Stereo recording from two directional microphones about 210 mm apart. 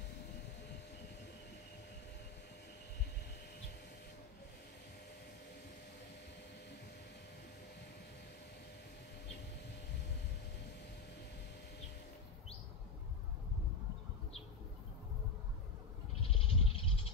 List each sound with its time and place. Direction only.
16.2 s goat: 25° left (ahead or behind)